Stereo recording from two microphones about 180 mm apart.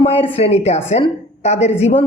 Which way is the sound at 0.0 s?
35° left (ahead or behind).